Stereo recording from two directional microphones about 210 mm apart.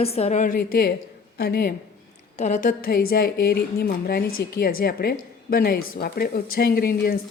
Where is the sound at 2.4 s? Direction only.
35° left (ahead or behind).